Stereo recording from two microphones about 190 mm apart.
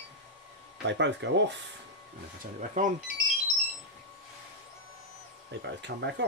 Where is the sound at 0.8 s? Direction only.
65° right (ahead or behind).